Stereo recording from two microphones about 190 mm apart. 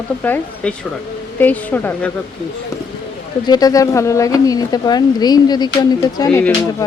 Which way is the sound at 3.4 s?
20° left (ahead or behind).